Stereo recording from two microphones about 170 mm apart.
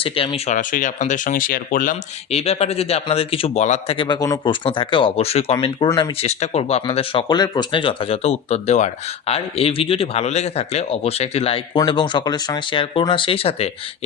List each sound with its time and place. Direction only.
0.0 s speech: 35° left (ahead or behind); by 2.0 s 55° left (ahead or behind)
2.3 s speech: 35° left (ahead or behind)
3.9 s speech: 25° left (ahead or behind)
6.2 s speech: 40° left (ahead or behind)